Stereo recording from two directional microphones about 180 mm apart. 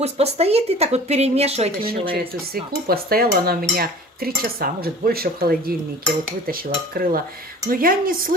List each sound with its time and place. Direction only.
0.0 s speech: 35° right (ahead or behind)
1.8 s cutlery: 55° right (ahead or behind)
7.7 s speech: 50° right (ahead or behind)